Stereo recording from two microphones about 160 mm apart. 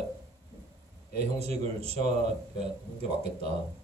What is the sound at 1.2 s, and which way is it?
Speech, 40° right (ahead or behind).